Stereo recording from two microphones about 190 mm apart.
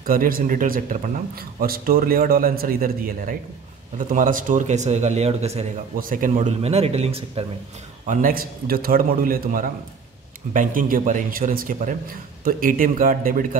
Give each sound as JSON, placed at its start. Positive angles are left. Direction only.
{"t": 0.0, "sound": "a man's voice", "side_deg": -50}
{"t": 5.9, "sound": "a man's voice", "side_deg": -45}
{"t": 8.1, "sound": "a man's voice", "side_deg": -45}